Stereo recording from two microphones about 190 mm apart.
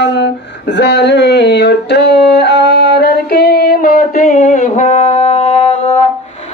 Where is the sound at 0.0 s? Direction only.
65° left (ahead or behind); by 6.0 s 35° left (ahead or behind).